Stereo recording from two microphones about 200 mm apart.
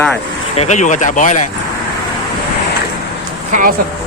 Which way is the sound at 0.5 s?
35° left (ahead or behind).